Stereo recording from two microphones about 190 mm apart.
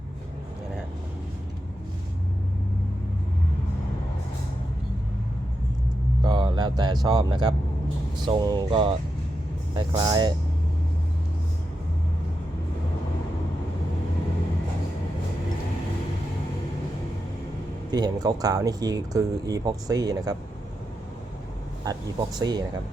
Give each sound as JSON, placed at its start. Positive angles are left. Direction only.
{"t": 6.2, "sound": "speech", "side_deg": -20}
{"t": 17.9, "sound": "speech", "side_deg": -20}
{"t": 21.8, "sound": "air conditioning", "side_deg": -20}
{"t": 22.4, "sound": "speech", "side_deg": -20}